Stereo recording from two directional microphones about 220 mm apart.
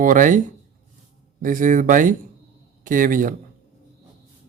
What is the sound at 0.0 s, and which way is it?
Speech, 35° right (ahead or behind).